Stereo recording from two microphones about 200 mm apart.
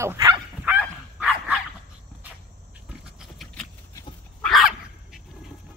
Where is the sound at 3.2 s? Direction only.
Centre (ahead or behind).